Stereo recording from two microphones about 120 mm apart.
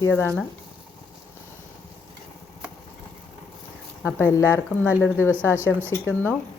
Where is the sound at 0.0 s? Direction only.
20° left (ahead or behind).